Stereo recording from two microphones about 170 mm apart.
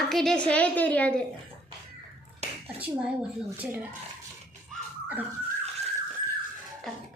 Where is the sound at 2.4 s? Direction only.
40° right (ahead or behind).